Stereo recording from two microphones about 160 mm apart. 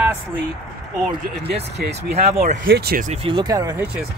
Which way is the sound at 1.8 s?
80° right.